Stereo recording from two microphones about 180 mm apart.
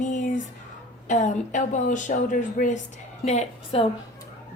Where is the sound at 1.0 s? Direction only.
45° left (ahead or behind).